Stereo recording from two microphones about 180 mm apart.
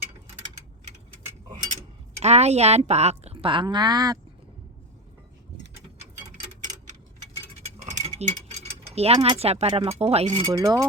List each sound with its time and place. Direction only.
2.2 s a woman's voice: 35° right (ahead or behind)
7.9 s speech: 40° right (ahead or behind)
10.5 s speech: 20° right (ahead or behind)